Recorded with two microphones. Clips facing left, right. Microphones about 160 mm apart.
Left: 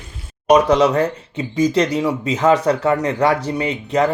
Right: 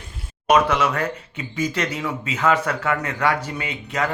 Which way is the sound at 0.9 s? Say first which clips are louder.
Left 7 dB; 30° left (ahead or behind).